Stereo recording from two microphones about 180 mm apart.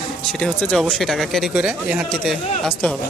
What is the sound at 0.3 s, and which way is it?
Speech, 5° left (ahead or behind).